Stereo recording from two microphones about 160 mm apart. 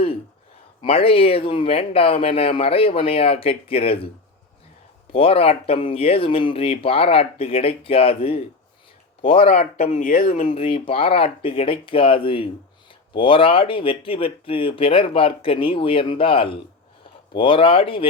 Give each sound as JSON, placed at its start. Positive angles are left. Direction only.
{"t": 0.8, "sound": "speech", "side_deg": 35}
{"t": 5.1, "sound": "speech", "side_deg": 35}
{"t": 10.5, "sound": "speech", "side_deg": 35}